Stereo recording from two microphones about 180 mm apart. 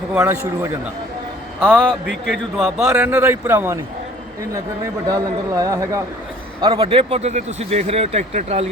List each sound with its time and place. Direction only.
0.2 s a man's voice: 10° right (ahead or behind)
1.7 s a man's voice: 5° left (ahead or behind); by 3.8 s 10° right (ahead or behind)
5.0 s a man's voice: 20° right (ahead or behind)
6.6 s a man's voice: 30° right (ahead or behind)